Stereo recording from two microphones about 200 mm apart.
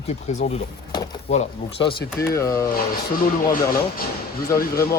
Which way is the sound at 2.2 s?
15° left (ahead or behind).